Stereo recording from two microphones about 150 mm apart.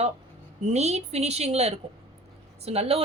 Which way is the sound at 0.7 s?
45° right (ahead or behind).